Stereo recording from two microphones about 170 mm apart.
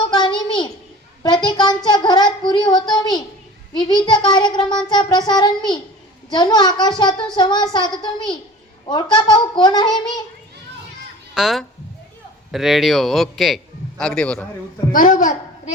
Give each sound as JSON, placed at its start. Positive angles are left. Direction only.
{"t": 0.0, "sound": "a sound", "side_deg": 30}
{"t": 1.2, "sound": "a child's voice", "side_deg": 25}
{"t": 11.3, "sound": "a man's voice", "side_deg": 0}
{"t": 14.9, "sound": "a child's voice", "side_deg": 50}